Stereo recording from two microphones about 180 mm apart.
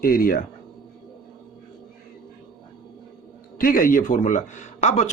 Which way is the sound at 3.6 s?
50° left (ahead or behind).